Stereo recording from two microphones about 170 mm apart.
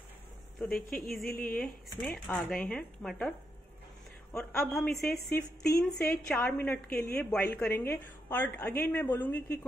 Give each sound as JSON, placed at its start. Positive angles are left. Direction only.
{"t": 0.7, "sound": "speech", "side_deg": 60}
{"t": 0.9, "sound": "speech", "side_deg": 0}
{"t": 4.4, "sound": "speech", "side_deg": 5}
{"t": 5.3, "sound": "a woman's voice", "side_deg": 15}